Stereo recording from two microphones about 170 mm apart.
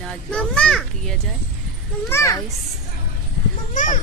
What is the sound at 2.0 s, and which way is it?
Speech, 15° left (ahead or behind).